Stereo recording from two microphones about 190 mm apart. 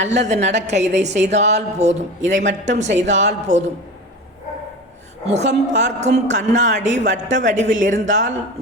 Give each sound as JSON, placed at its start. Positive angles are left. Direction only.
{"t": 0.0, "sound": "a woman's voice", "side_deg": -40}
{"t": 5.2, "sound": "a woman's voice", "side_deg": -35}